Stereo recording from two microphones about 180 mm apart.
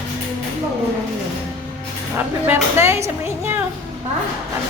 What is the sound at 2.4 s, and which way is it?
Speech, 15° right (ahead or behind).